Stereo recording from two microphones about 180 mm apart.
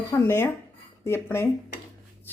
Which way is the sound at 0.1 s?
15° left (ahead or behind).